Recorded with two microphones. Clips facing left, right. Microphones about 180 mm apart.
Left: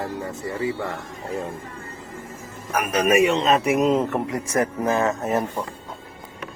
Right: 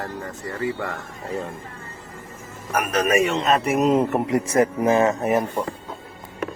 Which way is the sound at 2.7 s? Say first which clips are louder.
Left 1 dB; 10° left (ahead or behind).